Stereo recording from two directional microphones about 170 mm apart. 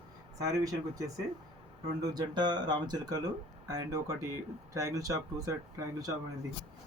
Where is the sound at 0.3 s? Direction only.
20° right (ahead or behind).